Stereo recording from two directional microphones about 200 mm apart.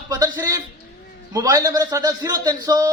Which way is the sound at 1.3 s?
20° right (ahead or behind).